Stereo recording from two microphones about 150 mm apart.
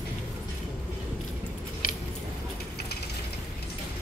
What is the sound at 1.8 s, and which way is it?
Keys jangling, 65° left (ahead or behind).